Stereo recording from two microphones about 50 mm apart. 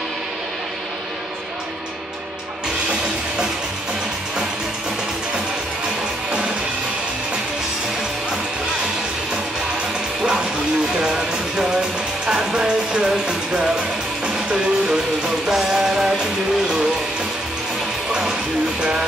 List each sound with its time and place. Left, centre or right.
11.0 s music: centre
18.8 s music: centre